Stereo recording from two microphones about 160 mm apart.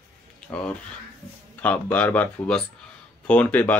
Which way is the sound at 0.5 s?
5° left (ahead or behind).